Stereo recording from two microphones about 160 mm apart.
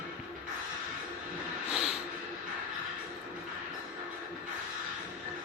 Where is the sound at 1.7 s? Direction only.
5° right (ahead or behind).